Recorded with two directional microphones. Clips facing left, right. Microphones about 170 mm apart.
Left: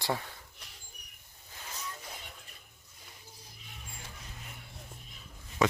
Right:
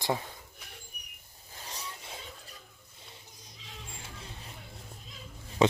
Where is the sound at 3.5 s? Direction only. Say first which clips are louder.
Right 4 dB; 90° right.